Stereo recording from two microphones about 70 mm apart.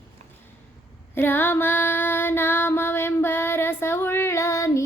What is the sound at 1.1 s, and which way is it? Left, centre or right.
Female singing, left.